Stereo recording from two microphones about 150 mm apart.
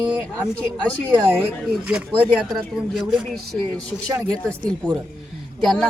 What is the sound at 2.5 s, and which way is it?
Speech, centre (ahead or behind).